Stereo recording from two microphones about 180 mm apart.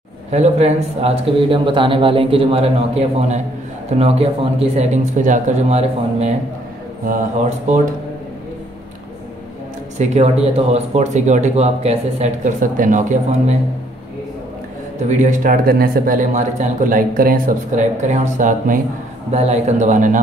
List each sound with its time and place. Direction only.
0.3 s speech: 35° right (ahead or behind)
9.9 s speech: 40° right (ahead or behind)
12.7 s speech: 45° right (ahead or behind)
15.0 s speech: 45° right (ahead or behind)